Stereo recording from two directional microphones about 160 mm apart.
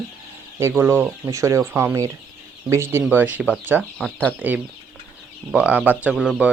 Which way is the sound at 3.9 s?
5° left (ahead or behind).